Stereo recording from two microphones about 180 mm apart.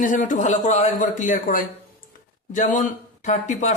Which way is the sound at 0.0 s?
45° left (ahead or behind).